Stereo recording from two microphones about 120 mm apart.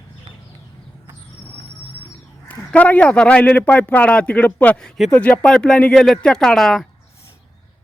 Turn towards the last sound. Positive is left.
turn(degrees=5)  # may be behind; listen again after turning